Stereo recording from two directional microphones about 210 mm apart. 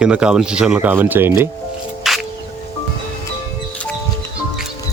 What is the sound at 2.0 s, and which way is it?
Music, centre (ahead or behind).